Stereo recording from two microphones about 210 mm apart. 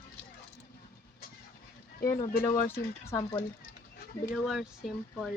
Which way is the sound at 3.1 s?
15° left (ahead or behind).